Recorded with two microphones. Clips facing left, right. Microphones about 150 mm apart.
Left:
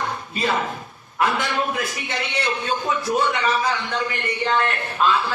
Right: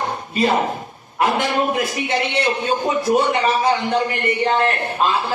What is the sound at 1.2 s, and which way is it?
A man's voice, 45° right (ahead or behind).